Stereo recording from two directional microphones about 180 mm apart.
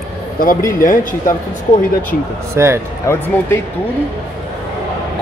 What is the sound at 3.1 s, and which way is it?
Speech, 15° left (ahead or behind).